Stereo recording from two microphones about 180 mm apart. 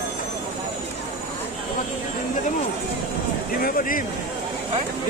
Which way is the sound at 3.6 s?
50° left (ahead or behind).